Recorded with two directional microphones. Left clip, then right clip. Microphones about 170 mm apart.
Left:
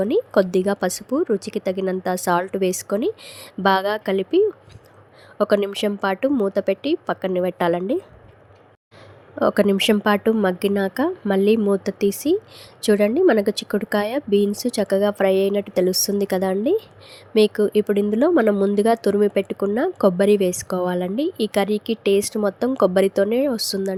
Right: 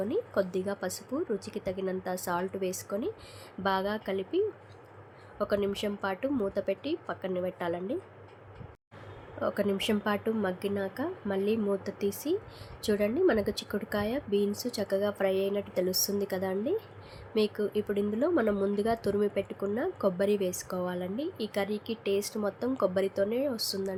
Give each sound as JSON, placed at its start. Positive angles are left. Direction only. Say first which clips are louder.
{"t": 0.0, "sound": "speech", "louder": "left 12 dB", "side_deg": 50}
{"t": 9.4, "sound": "speech", "louder": "left 12 dB", "side_deg": 55}